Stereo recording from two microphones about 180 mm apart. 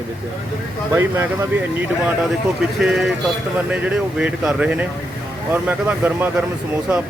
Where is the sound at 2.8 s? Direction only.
Centre (ahead or behind).